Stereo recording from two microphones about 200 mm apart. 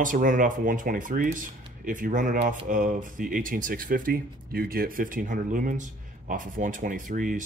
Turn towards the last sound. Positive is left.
turn(degrees=-40)  # may be behind; listen again after turning